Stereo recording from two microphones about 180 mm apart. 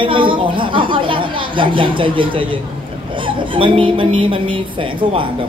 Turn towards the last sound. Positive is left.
turn(degrees=-30)  # may be behind; listen again after turning